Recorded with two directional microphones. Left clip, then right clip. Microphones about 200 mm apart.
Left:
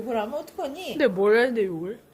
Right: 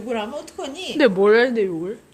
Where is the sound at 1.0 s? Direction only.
15° right (ahead or behind).